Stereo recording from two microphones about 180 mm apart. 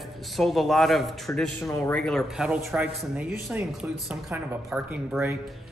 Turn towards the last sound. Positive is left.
turn(degrees=0)  # may be behind; listen again after turning